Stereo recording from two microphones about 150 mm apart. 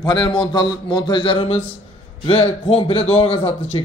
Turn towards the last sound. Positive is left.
turn(degrees=40)  # may be behind; listen again after turning